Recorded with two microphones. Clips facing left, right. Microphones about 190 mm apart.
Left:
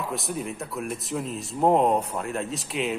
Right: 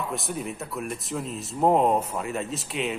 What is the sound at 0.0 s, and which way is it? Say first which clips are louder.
A man's voice: even; centre (ahead or behind).